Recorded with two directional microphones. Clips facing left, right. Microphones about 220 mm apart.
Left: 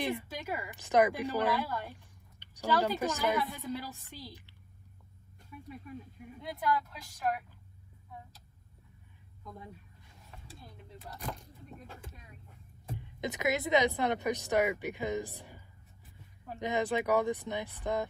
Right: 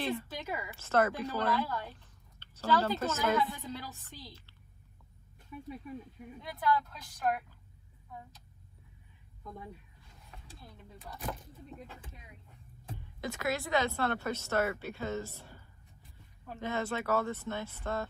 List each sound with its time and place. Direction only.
0.0 s a woman's voice: 15° left (ahead or behind)
6.9 s a woman's voice: centre (ahead or behind)
10.5 s speech: centre (ahead or behind)
12.9 s speech: 20° left (ahead or behind)